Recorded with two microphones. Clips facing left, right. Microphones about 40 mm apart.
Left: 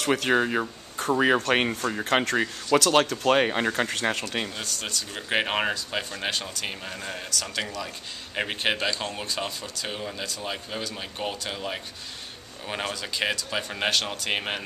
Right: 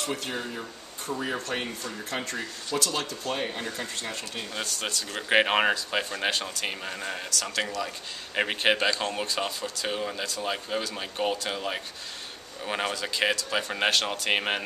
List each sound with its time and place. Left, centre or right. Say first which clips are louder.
0.0 s speech: left 9 dB; left
4.6 s speech: right 1 dB; centre